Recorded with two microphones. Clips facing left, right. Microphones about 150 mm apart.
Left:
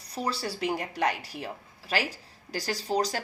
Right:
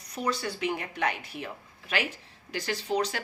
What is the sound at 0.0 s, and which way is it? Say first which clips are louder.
Speech: right 1 dB; 30° left (ahead or behind).